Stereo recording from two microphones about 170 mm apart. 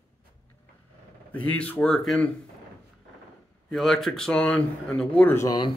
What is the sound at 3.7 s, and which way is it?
Speech, centre (ahead or behind).